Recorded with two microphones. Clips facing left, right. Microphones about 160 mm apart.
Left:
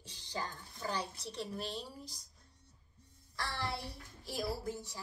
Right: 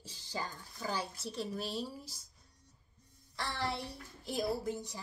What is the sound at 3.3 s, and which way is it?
A child's voice, 20° right (ahead or behind).